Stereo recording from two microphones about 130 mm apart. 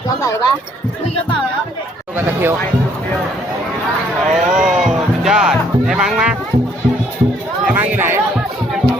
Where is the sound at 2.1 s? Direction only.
15° right (ahead or behind).